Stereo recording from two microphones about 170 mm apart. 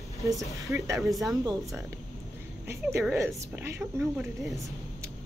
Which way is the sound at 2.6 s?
15° right (ahead or behind).